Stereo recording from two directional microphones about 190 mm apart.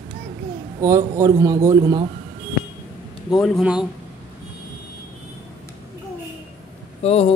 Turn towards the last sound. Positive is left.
turn(degrees=30)  # may be behind; listen again after turning